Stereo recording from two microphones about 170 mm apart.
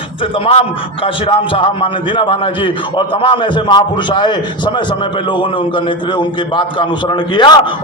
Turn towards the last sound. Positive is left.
turn(degrees=25)  # may be behind; listen again after turning